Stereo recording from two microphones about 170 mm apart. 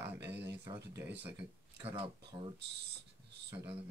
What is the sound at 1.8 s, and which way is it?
Speech, 30° right (ahead or behind).